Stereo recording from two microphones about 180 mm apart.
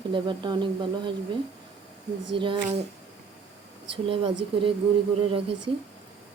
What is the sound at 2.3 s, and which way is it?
Speech, 30° right (ahead or behind).